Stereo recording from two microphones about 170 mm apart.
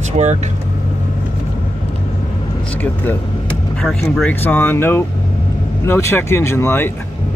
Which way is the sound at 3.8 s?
10° left (ahead or behind).